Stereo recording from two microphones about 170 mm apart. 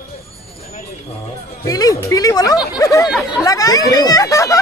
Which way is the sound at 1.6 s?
20° left (ahead or behind).